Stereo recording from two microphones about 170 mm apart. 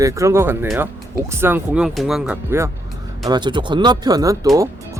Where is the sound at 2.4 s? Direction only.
15° right (ahead or behind).